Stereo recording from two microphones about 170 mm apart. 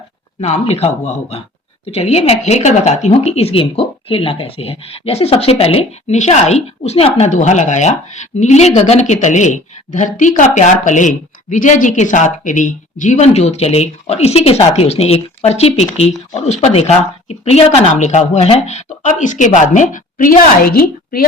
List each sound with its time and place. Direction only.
0.4 s speech: 40° left (ahead or behind); by 21.2 s 60° left (ahead or behind)